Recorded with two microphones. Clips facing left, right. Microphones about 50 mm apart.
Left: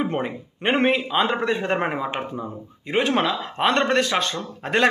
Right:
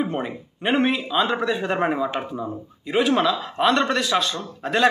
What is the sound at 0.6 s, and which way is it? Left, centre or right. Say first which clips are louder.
Speech: left 1 dB; left.